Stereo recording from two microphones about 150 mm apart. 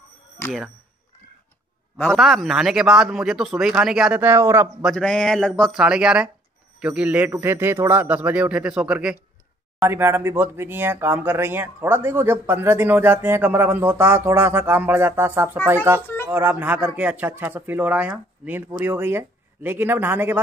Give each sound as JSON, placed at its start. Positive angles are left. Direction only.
{"t": 2.0, "sound": "speech", "side_deg": 0}
{"t": 4.8, "sound": "speech", "side_deg": 5}